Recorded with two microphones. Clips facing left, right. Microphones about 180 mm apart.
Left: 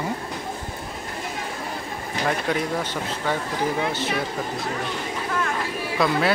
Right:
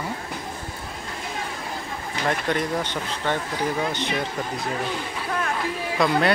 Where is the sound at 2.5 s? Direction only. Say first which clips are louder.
Even; 5° left (ahead or behind).